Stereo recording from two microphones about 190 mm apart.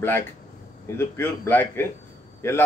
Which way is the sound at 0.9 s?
10° left (ahead or behind).